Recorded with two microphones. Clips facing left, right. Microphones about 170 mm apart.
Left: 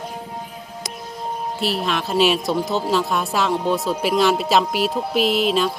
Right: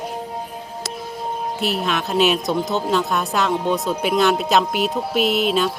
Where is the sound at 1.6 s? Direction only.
Centre (ahead or behind).